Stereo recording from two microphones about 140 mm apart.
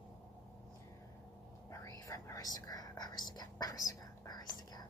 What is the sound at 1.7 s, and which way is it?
Whispering, 20° left (ahead or behind).